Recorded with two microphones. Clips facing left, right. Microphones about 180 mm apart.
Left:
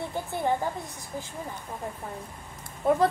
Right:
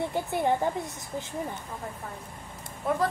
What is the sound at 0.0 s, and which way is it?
Speech, 20° right (ahead or behind).